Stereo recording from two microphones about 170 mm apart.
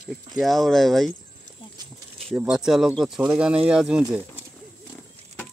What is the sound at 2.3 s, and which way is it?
Speech, 5° right (ahead or behind).